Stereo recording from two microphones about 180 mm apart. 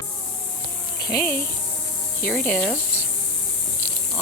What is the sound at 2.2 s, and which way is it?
Speech, 5° left (ahead or behind).